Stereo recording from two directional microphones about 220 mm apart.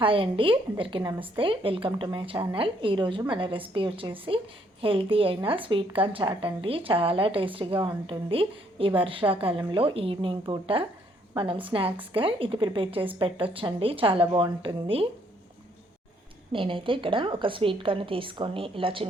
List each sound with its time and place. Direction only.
0.0 s speech: 25° right (ahead or behind)
16.5 s speech: 25° right (ahead or behind)